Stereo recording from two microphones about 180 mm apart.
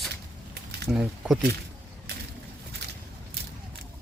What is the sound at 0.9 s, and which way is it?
Speech, centre (ahead or behind).